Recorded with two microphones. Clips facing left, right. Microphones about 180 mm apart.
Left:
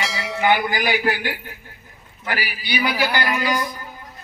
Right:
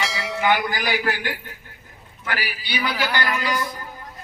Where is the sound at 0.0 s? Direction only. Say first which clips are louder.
Even; centre (ahead or behind).